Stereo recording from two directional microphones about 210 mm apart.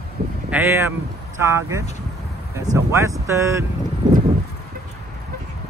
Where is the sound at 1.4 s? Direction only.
15° right (ahead or behind).